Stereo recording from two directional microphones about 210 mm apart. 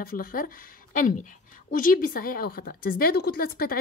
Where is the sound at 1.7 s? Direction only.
40° left (ahead or behind).